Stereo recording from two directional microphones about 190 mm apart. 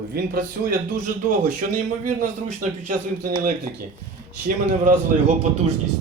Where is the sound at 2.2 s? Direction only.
40° right (ahead or behind).